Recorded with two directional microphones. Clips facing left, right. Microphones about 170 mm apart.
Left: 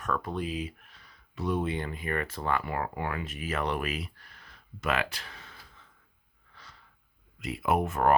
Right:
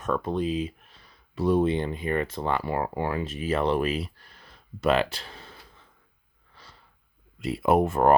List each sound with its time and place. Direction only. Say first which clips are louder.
0.0 s speech: right 5 dB; 25° right (ahead or behind)
6.5 s a sound: right 2 dB; 30° right (ahead or behind)
7.3 s speech: right 6 dB; 30° right (ahead or behind)